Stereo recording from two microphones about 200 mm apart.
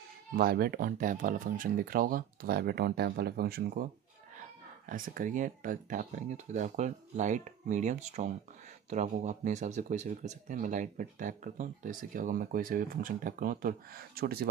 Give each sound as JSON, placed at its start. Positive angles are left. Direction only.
{"t": 0.4, "sound": "speech", "side_deg": -50}